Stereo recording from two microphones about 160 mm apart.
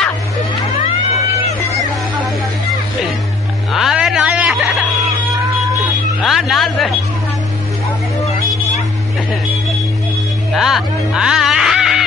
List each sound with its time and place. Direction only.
3.7 s a sound: 5° right (ahead or behind)
6.2 s music: centre (ahead or behind)
10.5 s music: centre (ahead or behind)